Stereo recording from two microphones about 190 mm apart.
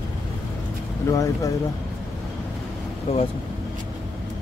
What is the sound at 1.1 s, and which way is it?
Speech, 15° left (ahead or behind).